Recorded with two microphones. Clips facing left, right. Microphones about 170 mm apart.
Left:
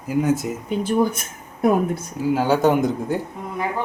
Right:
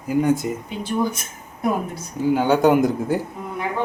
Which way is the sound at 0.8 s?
50° left (ahead or behind).